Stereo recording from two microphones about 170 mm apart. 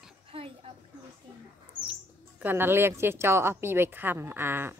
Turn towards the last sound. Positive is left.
turn(degrees=-15)  # may be behind; listen again after turning